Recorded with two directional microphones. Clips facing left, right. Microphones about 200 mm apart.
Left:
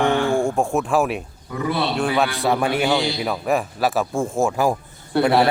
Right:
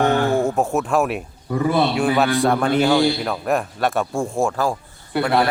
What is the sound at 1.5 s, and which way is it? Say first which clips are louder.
Speech: right 5 dB; 45° right (ahead or behind).